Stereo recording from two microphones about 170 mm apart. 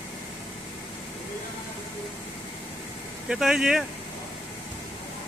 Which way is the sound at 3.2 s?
5° right (ahead or behind).